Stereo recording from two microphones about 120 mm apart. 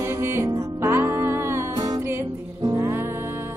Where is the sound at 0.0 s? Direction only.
20° right (ahead or behind).